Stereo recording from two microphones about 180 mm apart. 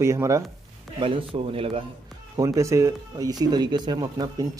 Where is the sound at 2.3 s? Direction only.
20° right (ahead or behind).